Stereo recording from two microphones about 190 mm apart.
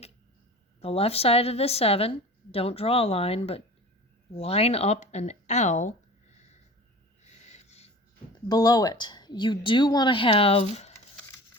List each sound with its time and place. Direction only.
0.8 s a woman's voice: 30° left (ahead or behind)
7.3 s a sound: 35° left (ahead or behind)
8.4 s speech: 20° left (ahead or behind)